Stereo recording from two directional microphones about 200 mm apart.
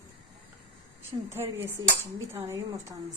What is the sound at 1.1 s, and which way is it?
Speech, 25° right (ahead or behind).